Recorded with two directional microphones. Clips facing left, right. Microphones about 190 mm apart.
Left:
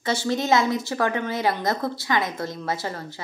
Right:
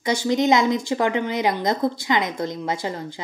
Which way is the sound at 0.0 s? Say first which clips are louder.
Right 4 dB; 15° right (ahead or behind).